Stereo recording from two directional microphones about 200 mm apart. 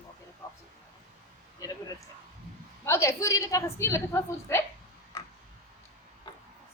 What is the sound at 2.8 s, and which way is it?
A woman's voice, 15° left (ahead or behind).